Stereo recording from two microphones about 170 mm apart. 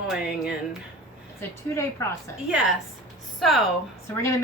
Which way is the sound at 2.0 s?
15° left (ahead or behind).